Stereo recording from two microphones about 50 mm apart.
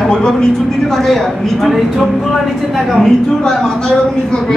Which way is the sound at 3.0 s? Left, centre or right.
Centre.